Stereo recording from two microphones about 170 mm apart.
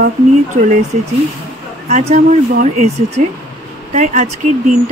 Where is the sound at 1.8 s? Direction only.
40° right (ahead or behind).